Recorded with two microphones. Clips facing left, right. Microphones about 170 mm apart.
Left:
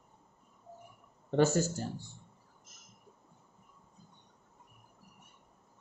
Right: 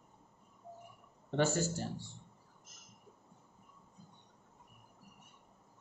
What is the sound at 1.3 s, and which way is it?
Speech, 45° left (ahead or behind).